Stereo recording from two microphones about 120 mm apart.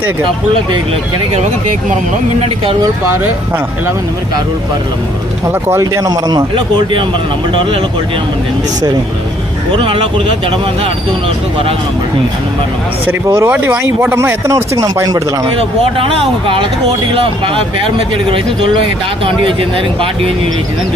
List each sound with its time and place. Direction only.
5.5 s a man's voice: 20° right (ahead or behind); by 7.0 s 35° right (ahead or behind)
9.7 s speech: 45° right (ahead or behind)
13.1 s speech: 25° right (ahead or behind)
15.4 s speech: 50° right (ahead or behind)